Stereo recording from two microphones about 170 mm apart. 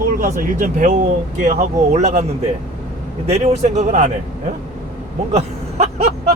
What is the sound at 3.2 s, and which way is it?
Speech, 40° right (ahead or behind).